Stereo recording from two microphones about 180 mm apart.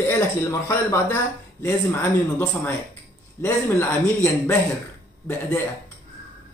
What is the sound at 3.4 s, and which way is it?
Speech, 15° left (ahead or behind).